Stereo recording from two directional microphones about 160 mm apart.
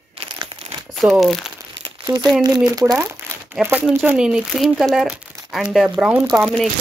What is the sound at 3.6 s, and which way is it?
Speech, centre (ahead or behind).